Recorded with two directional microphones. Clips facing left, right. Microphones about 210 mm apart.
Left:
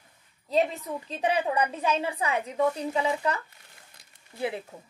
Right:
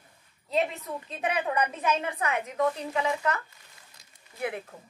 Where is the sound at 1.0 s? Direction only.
30° left (ahead or behind).